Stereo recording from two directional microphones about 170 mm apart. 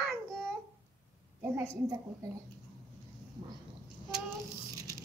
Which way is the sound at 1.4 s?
15° right (ahead or behind).